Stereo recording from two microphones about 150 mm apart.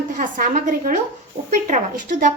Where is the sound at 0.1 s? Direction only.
65° right (ahead or behind).